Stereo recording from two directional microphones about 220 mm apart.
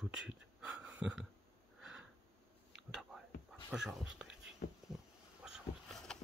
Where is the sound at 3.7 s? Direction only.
Centre (ahead or behind).